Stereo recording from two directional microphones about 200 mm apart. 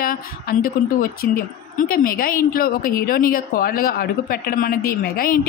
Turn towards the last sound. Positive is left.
turn(degrees=45)  # may be behind; listen again after turning